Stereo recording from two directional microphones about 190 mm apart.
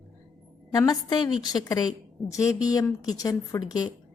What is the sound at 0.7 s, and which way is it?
A woman's voice, 20° left (ahead or behind).